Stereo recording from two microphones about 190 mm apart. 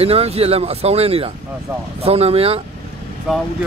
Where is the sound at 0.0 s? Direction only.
30° right (ahead or behind).